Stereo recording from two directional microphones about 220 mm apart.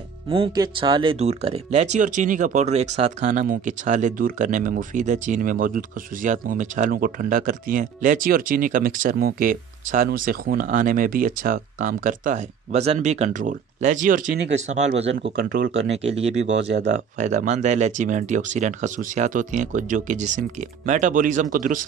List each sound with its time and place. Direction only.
0.3 s speech: 25° right (ahead or behind); by 15.7 s 40° right (ahead or behind)
15.9 s speech: 30° right (ahead or behind)
16.5 s speech: 50° right (ahead or behind)
16.8 s speech: 30° right (ahead or behind)